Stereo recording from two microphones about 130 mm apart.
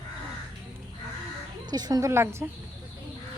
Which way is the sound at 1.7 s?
30° right (ahead or behind).